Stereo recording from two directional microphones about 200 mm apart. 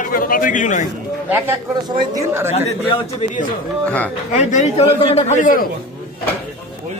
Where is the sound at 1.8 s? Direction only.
20° right (ahead or behind).